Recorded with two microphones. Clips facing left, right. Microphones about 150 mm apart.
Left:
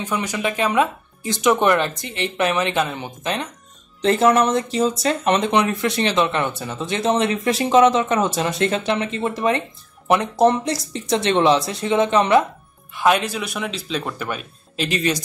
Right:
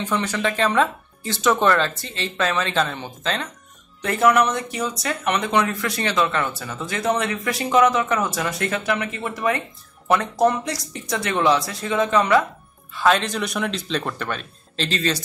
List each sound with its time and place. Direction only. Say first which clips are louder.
0.0 s speech: even; 15° left (ahead or behind)